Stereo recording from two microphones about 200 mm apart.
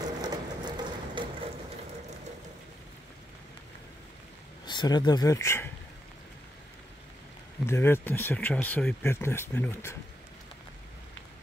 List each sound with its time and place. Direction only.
0.2 s a sound: 20° right (ahead or behind)
4.6 s speech: 20° left (ahead or behind)
7.6 s speech: 10° left (ahead or behind)